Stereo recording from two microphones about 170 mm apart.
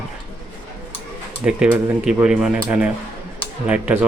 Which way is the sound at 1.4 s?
5° right (ahead or behind).